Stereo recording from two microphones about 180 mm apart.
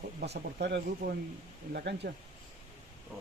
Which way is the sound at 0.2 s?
70° right (ahead or behind).